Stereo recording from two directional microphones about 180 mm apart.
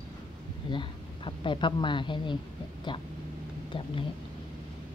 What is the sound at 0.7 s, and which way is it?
Speech, 25° left (ahead or behind).